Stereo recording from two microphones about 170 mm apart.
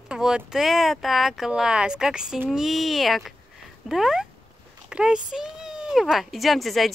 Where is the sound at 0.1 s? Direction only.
5° right (ahead or behind).